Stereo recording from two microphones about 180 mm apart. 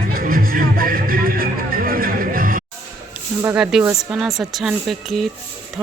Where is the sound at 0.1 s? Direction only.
50° right (ahead or behind).